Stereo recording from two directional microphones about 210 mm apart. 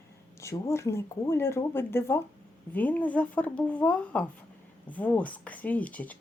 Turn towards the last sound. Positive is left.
turn(degrees=5)  # may be behind; listen again after turning